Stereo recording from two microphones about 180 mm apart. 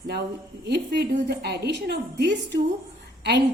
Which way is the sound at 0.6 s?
65° right (ahead or behind).